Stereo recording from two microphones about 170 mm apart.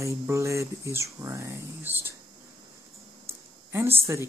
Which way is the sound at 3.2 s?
15° right (ahead or behind).